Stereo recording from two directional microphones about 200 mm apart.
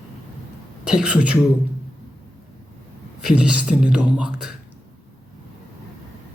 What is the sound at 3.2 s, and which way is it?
Speech, 5° right (ahead or behind).